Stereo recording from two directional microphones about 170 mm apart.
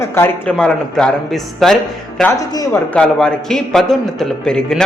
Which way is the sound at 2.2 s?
15° left (ahead or behind).